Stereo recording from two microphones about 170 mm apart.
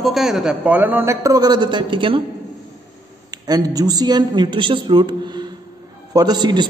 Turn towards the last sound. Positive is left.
turn(degrees=-25)  # may be behind; listen again after turning